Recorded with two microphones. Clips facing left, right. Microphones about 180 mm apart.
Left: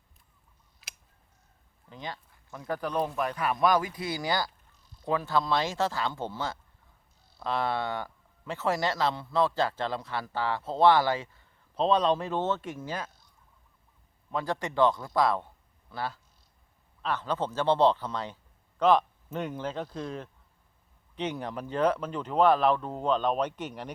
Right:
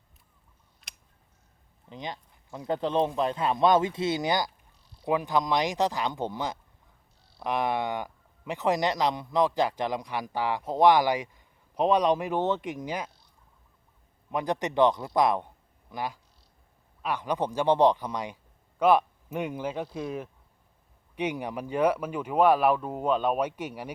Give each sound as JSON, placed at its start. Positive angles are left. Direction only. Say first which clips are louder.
{"t": 0.8, "sound": "scissors", "louder": "left 1 dB", "side_deg": 0}
{"t": 1.9, "sound": "speech", "louder": "right 2 dB", "side_deg": -20}
{"t": 14.3, "sound": "a man's voice", "louder": "right 3 dB", "side_deg": -20}